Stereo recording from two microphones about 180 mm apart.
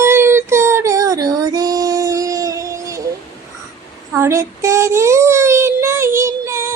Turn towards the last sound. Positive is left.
turn(degrees=-15)  # may be behind; listen again after turning